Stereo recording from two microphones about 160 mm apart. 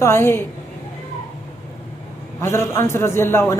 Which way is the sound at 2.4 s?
15° left (ahead or behind).